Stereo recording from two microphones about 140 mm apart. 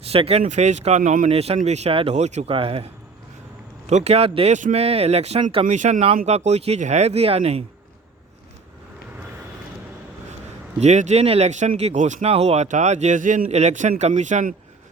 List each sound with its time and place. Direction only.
0.0 s speech: 45° right (ahead or behind)
5.6 s speech: 55° right (ahead or behind)
10.8 s speech: 55° right (ahead or behind)